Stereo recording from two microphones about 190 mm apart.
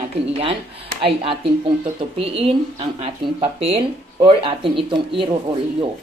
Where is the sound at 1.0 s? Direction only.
30° right (ahead or behind).